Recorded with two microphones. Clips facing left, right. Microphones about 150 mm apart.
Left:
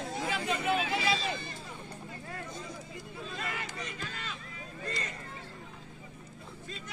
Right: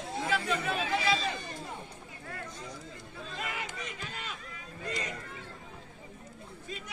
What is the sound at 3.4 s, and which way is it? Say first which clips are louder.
Crowd: right 2 dB; 15° right (ahead or behind).